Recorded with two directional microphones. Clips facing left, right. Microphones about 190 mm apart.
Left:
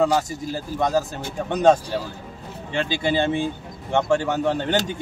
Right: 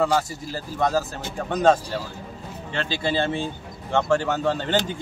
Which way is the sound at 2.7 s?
15° left (ahead or behind).